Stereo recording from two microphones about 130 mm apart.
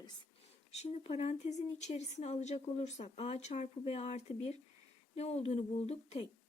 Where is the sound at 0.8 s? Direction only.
55° left (ahead or behind).